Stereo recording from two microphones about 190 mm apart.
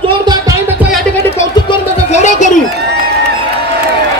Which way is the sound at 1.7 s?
40° left (ahead or behind).